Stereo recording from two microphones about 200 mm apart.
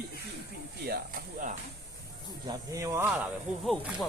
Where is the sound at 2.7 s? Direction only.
15° right (ahead or behind).